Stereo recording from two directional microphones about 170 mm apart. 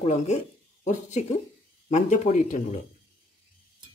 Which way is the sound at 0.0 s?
40° left (ahead or behind).